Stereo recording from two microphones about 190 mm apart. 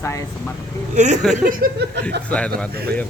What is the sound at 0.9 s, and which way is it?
Speech, 40° right (ahead or behind).